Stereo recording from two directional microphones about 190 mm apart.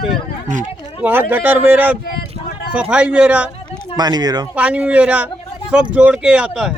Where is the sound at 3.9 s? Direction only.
20° right (ahead or behind).